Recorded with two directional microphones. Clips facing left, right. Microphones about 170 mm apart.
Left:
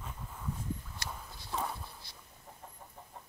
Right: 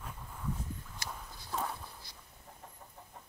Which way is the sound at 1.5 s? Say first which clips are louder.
Even; centre (ahead or behind).